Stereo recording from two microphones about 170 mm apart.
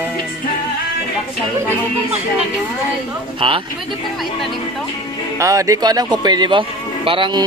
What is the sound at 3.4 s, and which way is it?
Speech, 30° right (ahead or behind).